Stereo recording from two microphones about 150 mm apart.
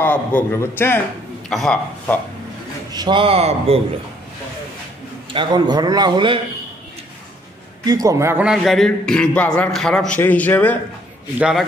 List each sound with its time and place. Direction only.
0.0 s a man's voice: 10° left (ahead or behind)
1.5 s a man's voice: centre (ahead or behind)
2.9 s a man's voice: 30° right (ahead or behind)
5.3 s a man's voice: 30° right (ahead or behind)
7.8 s a man's voice: 25° right (ahead or behind)
8.5 s a man's voice: centre (ahead or behind)
11.3 s a man's voice: 5° right (ahead or behind)